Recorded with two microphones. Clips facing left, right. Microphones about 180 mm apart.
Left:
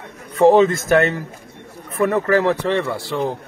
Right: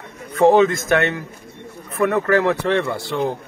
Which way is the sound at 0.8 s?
35° left (ahead or behind).